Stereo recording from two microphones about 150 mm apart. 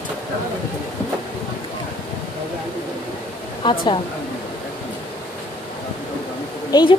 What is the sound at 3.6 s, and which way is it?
Speech, 30° left (ahead or behind).